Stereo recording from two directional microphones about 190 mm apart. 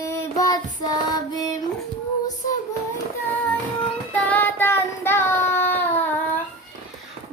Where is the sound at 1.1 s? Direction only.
20° left (ahead or behind).